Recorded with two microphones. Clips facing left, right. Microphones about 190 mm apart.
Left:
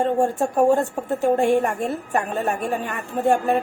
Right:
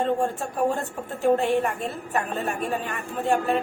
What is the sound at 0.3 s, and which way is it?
A woman's voice, 45° left (ahead or behind).